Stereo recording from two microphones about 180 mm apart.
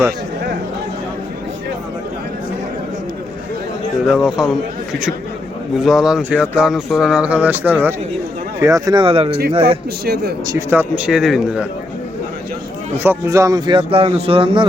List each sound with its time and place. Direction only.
4.0 s speech: 5° right (ahead or behind)
5.8 s speech: 5° right (ahead or behind); by 9.7 s 35° right (ahead or behind)
10.4 s speech: 15° right (ahead or behind)
13.0 s speech: 15° right (ahead or behind)